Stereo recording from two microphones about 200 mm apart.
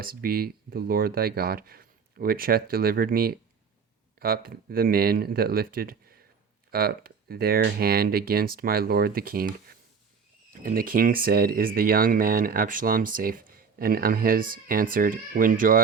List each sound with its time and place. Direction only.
0.0 s speech: 45° right (ahead or behind)